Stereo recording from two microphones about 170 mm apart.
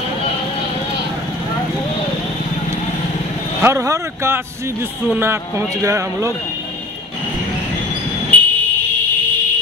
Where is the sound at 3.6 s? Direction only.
15° right (ahead or behind).